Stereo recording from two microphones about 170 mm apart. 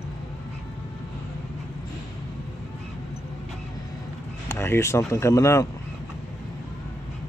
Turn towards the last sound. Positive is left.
turn(degrees=20)  # may be behind; listen again after turning